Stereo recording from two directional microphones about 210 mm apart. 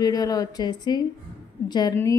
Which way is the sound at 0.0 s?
20° left (ahead or behind).